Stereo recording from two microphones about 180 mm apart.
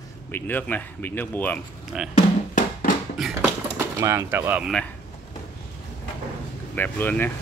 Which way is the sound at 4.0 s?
15° right (ahead or behind).